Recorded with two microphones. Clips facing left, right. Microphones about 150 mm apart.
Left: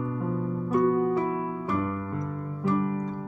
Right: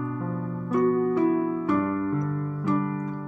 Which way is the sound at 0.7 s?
15° left (ahead or behind).